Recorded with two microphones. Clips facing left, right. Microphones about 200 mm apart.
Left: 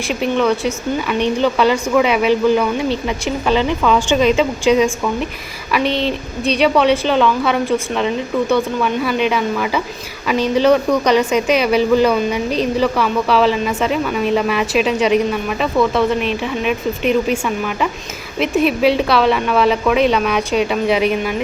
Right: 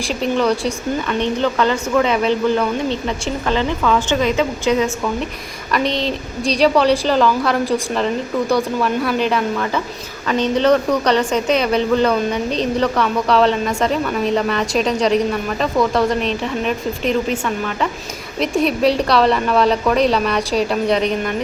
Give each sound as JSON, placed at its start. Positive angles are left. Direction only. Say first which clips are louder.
{"t": 0.2, "sound": "a woman's voice", "louder": "left 1 dB", "side_deg": 5}
{"t": 5.7, "sound": "a woman's voice", "louder": "left 2 dB", "side_deg": 5}
{"t": 18.3, "sound": "a woman's voice", "louder": "left 2 dB", "side_deg": 5}